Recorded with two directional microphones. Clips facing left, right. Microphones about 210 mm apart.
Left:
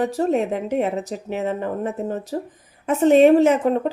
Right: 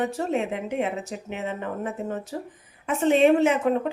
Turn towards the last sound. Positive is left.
turn(degrees=35)  # may be behind; listen again after turning